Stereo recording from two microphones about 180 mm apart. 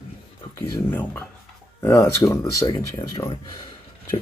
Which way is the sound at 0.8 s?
10° left (ahead or behind).